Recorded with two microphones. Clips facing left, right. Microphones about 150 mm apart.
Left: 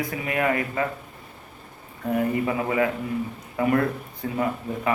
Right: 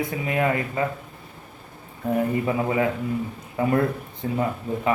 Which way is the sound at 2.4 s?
25° right (ahead or behind).